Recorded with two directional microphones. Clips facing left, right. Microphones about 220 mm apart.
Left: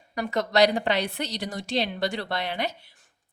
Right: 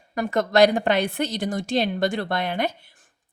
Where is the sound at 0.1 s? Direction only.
50° right (ahead or behind).